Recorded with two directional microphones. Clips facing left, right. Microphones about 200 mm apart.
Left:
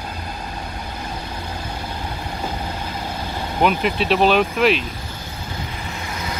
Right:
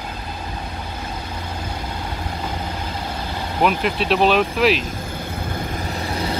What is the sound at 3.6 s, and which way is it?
Speech, centre (ahead or behind).